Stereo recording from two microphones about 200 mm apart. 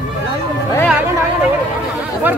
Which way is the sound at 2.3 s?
10° right (ahead or behind).